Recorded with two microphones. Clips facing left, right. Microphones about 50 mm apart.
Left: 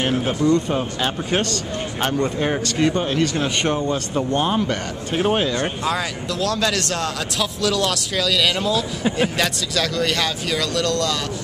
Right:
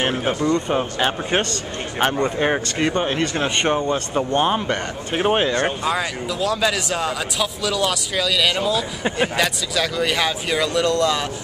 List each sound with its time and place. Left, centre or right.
0.0 s a man's voice: right
5.9 s a man's voice: centre